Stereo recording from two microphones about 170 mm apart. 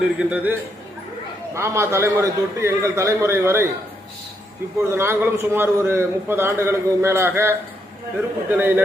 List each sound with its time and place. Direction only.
0.0 s a man's voice: 5° right (ahead or behind)
1.5 s a man's voice: 15° right (ahead or behind)
4.8 s a man's voice: 15° right (ahead or behind)